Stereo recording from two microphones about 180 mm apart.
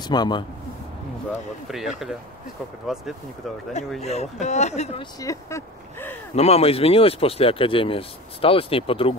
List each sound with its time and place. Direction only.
0.1 s a man's voice: 25° left (ahead or behind)
1.7 s speech: centre (ahead or behind)
4.0 s speech: 35° left (ahead or behind)
5.2 s speech: 15° left (ahead or behind)
6.3 s speech: 35° left (ahead or behind)